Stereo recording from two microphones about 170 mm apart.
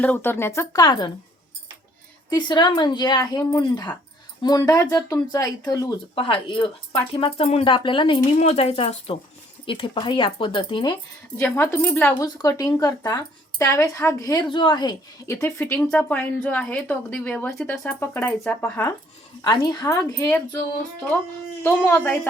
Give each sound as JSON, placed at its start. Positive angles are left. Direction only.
{"t": 0.0, "sound": "speech", "side_deg": 10}
{"t": 2.3, "sound": "a woman's voice", "side_deg": 25}
{"t": 11.3, "sound": "speech", "side_deg": 15}
{"t": 12.2, "sound": "a woman's voice", "side_deg": 20}
{"t": 21.6, "sound": "speech", "side_deg": 15}